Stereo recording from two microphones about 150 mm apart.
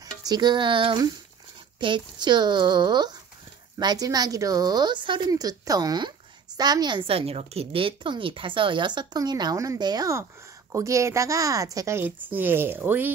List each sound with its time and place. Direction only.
0.2 s a woman's voice: 30° right (ahead or behind)